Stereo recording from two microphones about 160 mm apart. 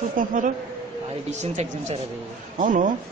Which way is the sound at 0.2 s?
55° right (ahead or behind).